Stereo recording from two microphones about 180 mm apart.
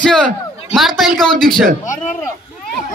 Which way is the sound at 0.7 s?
Centre (ahead or behind).